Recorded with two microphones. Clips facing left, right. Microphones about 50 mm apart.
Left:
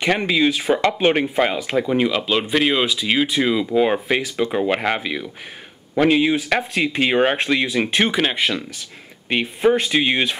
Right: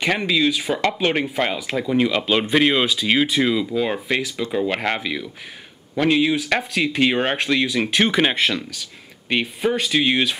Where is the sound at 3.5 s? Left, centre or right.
Centre.